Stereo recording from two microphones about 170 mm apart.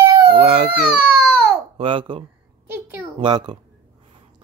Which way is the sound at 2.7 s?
10° right (ahead or behind).